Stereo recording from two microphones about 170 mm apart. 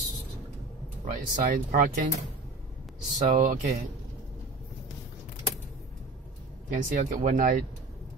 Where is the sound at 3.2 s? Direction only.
50° right (ahead or behind).